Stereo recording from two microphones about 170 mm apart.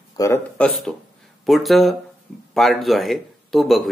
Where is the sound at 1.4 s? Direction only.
Centre (ahead or behind).